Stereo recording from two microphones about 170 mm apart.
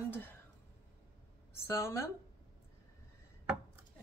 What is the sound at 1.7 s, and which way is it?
Speech, 15° left (ahead or behind).